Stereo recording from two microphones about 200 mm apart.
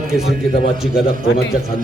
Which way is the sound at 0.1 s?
Centre (ahead or behind).